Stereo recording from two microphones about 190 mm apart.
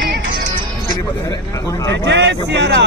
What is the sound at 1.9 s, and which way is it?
Speech, 65° right (ahead or behind).